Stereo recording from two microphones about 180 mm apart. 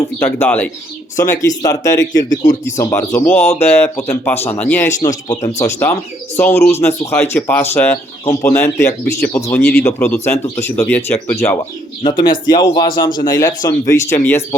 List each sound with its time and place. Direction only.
0.2 s speech: 10° left (ahead or behind)
12.1 s speech: 25° left (ahead or behind)